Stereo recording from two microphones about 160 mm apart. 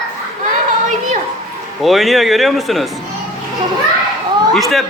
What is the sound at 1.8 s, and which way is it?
Speech, centre (ahead or behind).